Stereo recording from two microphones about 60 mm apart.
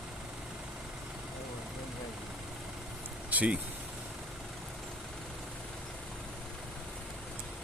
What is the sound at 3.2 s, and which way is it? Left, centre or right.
Vehicle, right.